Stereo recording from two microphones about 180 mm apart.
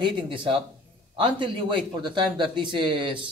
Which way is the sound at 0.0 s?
25° right (ahead or behind).